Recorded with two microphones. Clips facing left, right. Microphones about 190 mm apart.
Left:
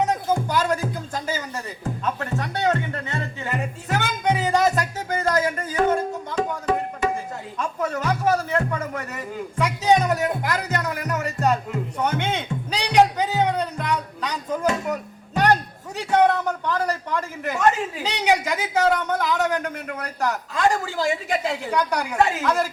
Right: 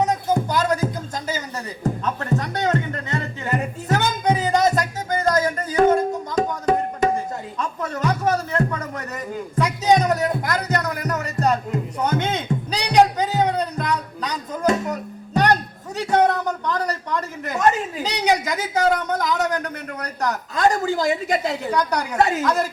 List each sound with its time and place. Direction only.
0.5 s music: 40° right (ahead or behind)
2.4 s a woman's voice: 40° right (ahead or behind)
4.3 s music: 40° right (ahead or behind)
8.8 s a woman's voice: 40° right (ahead or behind)
16.1 s a woman's voice: 40° right (ahead or behind)